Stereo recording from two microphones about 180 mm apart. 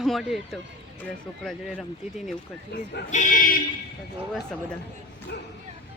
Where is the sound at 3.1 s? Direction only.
45° left (ahead or behind).